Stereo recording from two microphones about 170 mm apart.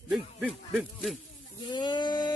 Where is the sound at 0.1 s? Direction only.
Centre (ahead or behind).